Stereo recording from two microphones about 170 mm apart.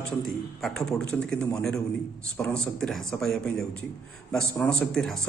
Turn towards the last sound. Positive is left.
turn(degrees=0)  # may be behind; listen again after turning